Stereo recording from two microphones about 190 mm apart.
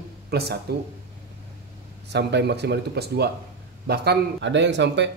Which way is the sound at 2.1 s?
60° right (ahead or behind).